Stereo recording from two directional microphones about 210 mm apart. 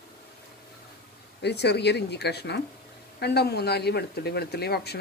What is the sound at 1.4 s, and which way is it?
Speech, 55° left (ahead or behind).